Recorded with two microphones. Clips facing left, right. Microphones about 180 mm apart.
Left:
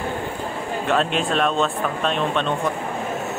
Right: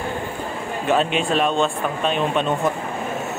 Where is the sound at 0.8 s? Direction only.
Centre (ahead or behind).